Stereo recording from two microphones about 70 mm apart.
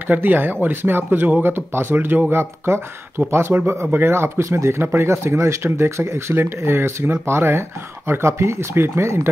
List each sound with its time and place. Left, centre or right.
0.1 s speech: right